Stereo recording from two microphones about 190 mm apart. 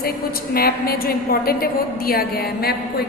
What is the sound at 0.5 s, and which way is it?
A woman's voice, 55° left (ahead or behind).